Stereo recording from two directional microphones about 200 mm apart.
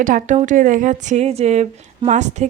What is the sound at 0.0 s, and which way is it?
A woman's voice, 40° right (ahead or behind).